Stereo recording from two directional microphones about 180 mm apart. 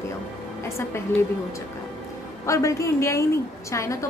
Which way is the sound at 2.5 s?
15° left (ahead or behind).